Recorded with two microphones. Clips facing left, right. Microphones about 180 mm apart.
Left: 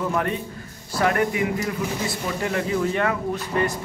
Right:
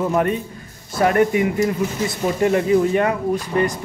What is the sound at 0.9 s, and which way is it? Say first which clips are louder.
Speech: right 5 dB; 25° right (ahead or behind).